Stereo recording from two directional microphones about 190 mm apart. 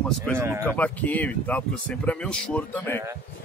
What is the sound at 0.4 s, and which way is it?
Speech, 15° right (ahead or behind).